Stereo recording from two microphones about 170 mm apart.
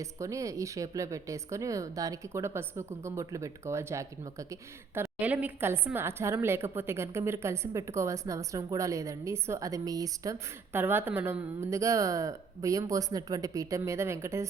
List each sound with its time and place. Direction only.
0.0 s a woman's voice: 20° right (ahead or behind)